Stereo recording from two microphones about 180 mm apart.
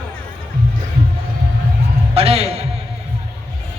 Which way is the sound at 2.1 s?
35° right (ahead or behind).